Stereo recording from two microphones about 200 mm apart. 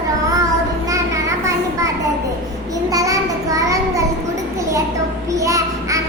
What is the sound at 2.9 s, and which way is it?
Child singing, 15° right (ahead or behind).